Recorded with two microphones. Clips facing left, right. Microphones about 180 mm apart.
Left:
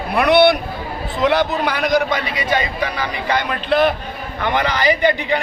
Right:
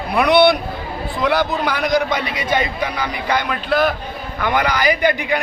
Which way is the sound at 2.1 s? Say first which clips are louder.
Even; 20° right (ahead or behind).